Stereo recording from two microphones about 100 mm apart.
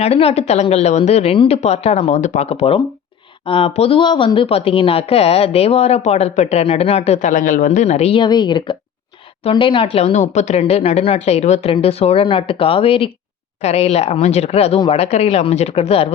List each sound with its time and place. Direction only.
0.0 s a woman's voice: 85° left
3.4 s a woman's voice: 70° left (ahead or behind); by 8.2 s 90° left
8.2 s speech: 50° left (ahead or behind)
9.4 s a woman's voice: 60° left (ahead or behind)
10.5 s speech: 90° left; by 13.1 s 65° left (ahead or behind)
13.6 s a woman's voice: 90° left